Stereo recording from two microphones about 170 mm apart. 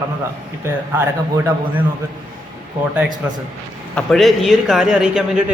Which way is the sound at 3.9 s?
Centre (ahead or behind).